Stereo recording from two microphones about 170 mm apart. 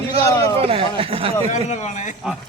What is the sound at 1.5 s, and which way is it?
Speech, 45° left (ahead or behind).